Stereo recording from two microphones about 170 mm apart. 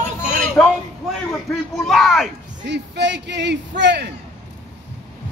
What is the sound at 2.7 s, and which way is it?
Speech, 90° right.